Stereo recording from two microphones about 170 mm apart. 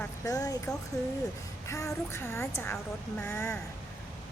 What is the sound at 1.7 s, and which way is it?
A woman's voice, 15° left (ahead or behind).